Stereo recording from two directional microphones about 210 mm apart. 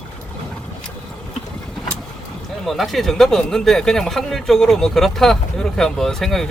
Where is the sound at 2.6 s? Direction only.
Centre (ahead or behind).